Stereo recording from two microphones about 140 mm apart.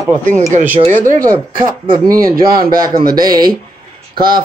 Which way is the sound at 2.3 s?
90° right.